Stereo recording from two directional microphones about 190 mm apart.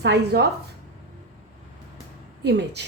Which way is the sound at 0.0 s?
60° right (ahead or behind).